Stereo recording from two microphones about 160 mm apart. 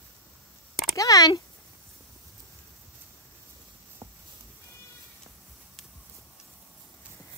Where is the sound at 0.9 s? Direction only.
20° left (ahead or behind).